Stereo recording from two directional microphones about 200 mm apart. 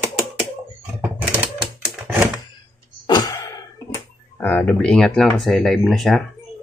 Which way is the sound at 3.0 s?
20° left (ahead or behind).